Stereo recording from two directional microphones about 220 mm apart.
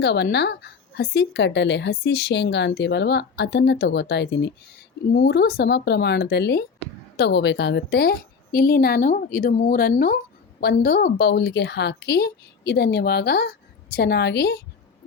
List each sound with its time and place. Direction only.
0.0 s a woman's voice: 50° left (ahead or behind)